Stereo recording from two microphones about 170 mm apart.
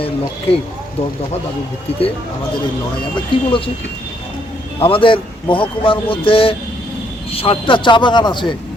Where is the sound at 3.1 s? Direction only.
30° left (ahead or behind).